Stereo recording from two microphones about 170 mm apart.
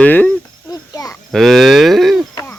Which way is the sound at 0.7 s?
20° left (ahead or behind).